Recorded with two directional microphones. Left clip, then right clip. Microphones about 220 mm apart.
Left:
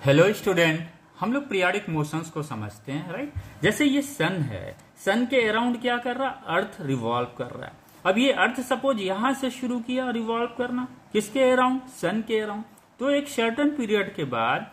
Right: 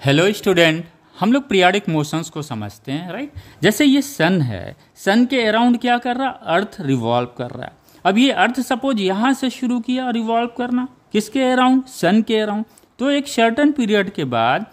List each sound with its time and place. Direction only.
0.0 s speech: 50° right (ahead or behind)